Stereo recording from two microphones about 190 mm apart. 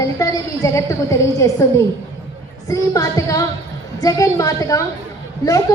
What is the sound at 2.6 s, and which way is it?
A woman's voice, 20° left (ahead or behind).